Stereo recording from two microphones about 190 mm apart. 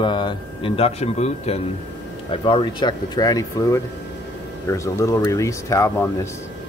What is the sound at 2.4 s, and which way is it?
Speech, 25° left (ahead or behind).